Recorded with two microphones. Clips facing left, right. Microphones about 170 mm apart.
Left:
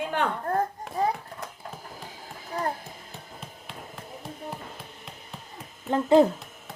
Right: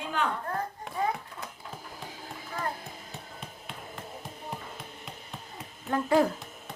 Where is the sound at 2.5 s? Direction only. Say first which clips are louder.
Left 5 dB; 40° left (ahead or behind).